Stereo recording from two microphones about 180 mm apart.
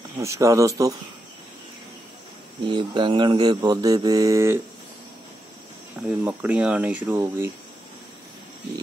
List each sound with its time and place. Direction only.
0.2 s speech: 15° right (ahead or behind)
2.7 s mantra: 25° right (ahead or behind)
6.0 s speech: 10° right (ahead or behind)